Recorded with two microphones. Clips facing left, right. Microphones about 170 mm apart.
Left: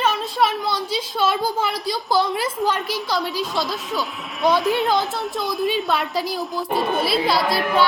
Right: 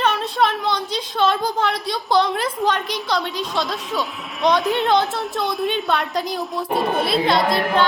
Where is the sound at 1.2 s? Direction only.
5° left (ahead or behind).